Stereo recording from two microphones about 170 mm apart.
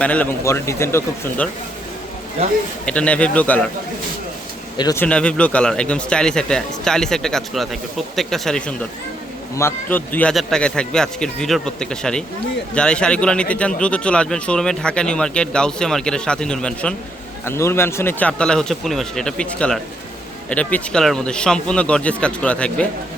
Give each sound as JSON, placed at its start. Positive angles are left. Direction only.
{"t": 0.0, "sound": "speech", "side_deg": 10}
{"t": 2.8, "sound": "speech", "side_deg": 5}
{"t": 4.8, "sound": "speech", "side_deg": 20}
{"t": 5.0, "sound": "speech", "side_deg": 5}